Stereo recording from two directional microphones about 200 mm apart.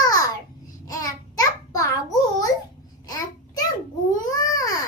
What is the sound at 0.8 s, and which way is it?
Babbling, 15° left (ahead or behind).